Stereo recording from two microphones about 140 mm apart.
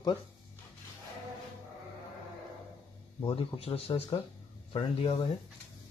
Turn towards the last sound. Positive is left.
turn(degrees=40)  # may be behind; listen again after turning